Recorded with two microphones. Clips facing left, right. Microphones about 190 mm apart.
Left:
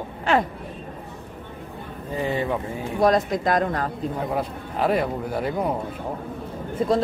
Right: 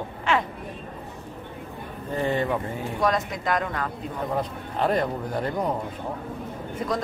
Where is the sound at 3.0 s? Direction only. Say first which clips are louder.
Left 6 dB; 35° left (ahead or behind).